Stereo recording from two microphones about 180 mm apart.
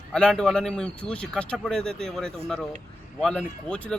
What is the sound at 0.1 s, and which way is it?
Speech, 5° left (ahead or behind).